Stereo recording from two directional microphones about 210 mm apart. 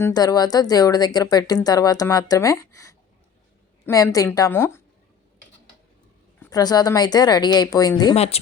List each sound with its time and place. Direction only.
0.0 s speech: 15° left (ahead or behind)
6.4 s speech: 20° left (ahead or behind)